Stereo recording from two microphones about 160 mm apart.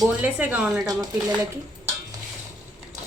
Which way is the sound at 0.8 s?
25° right (ahead or behind).